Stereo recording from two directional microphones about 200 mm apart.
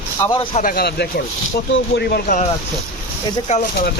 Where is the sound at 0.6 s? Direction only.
45° left (ahead or behind).